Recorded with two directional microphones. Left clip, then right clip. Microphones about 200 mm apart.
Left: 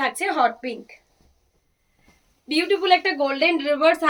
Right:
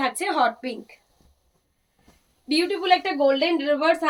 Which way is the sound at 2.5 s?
20° left (ahead or behind).